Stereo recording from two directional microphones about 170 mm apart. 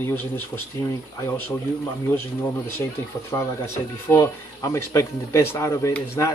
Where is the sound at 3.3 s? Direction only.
15° left (ahead or behind).